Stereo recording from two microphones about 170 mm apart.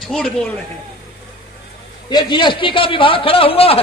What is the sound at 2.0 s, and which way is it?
A man's voice, 25° left (ahead or behind).